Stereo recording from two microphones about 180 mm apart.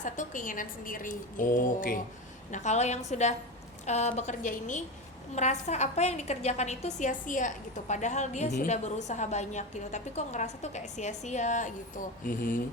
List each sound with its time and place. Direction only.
0.0 s a woman's voice: 45° left (ahead or behind)